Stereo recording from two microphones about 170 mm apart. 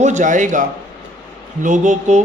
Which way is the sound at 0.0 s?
45° right (ahead or behind).